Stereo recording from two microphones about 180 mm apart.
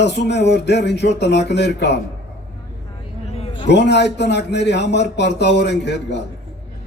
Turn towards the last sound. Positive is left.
turn(degrees=70)  # may be behind; listen again after turning